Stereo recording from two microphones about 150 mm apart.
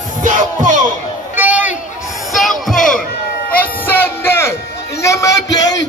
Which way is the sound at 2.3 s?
Centre (ahead or behind).